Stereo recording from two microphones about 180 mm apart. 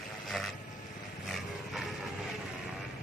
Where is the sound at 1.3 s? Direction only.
Centre (ahead or behind).